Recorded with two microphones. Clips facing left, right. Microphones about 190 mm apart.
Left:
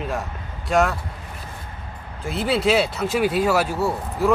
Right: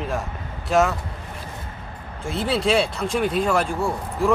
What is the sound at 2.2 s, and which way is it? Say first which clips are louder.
Speech: left 1 dB; centre (ahead or behind).